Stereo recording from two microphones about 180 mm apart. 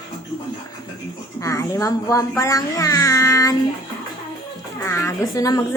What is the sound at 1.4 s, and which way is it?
A woman's voice, 20° left (ahead or behind).